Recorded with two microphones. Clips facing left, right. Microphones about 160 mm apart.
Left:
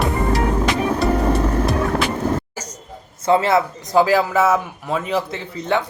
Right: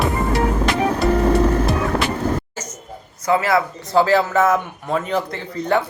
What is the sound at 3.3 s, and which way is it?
Speech, 25° left (ahead or behind).